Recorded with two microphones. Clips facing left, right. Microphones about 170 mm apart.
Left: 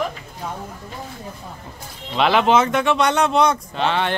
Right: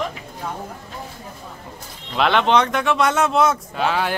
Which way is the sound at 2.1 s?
Centre (ahead or behind).